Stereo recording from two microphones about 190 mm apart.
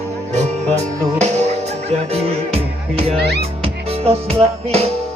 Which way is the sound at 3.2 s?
60° right (ahead or behind).